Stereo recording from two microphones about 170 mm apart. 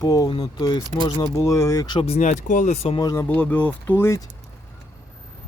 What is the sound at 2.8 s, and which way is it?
Speech, 25° left (ahead or behind).